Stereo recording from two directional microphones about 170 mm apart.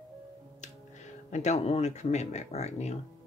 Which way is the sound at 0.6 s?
45° left (ahead or behind).